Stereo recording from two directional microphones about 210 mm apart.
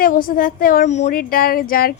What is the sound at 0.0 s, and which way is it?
A woman's voice, 40° left (ahead or behind).